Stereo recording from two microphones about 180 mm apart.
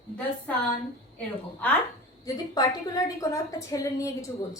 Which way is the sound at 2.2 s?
20° left (ahead or behind).